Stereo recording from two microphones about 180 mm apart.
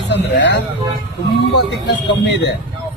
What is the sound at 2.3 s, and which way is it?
Speech, 80° left.